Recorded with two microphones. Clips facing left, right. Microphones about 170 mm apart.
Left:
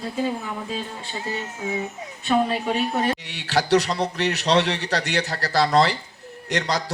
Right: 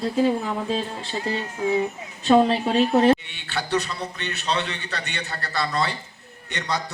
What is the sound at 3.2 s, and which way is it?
A man's voice, 90° left.